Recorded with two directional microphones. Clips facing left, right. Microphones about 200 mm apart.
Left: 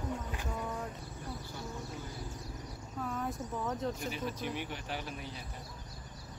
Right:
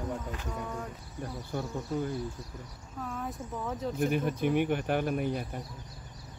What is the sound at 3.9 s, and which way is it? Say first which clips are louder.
Speech: right 9 dB; 55° right (ahead or behind).